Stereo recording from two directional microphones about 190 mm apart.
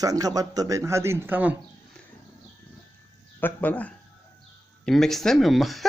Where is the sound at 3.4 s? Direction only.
10° left (ahead or behind).